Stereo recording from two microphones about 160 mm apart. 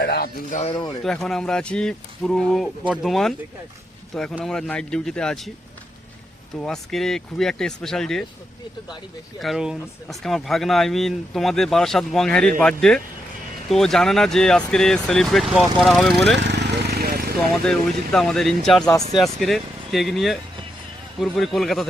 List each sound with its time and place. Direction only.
0.0 s music: 80° left
0.7 s speech: 25° left (ahead or behind)
1.0 s speech: 5° left (ahead or behind)
6.6 s speech: 5° left (ahead or behind)
9.4 s speech: centre (ahead or behind)
16.5 s a sound: 90° right; by 17.3 s 70° right (ahead or behind)
17.5 s speech: 5° left (ahead or behind)